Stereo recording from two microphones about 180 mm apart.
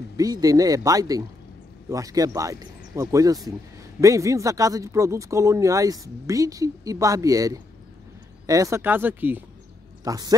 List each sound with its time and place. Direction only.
0.2 s speech: 20° right (ahead or behind)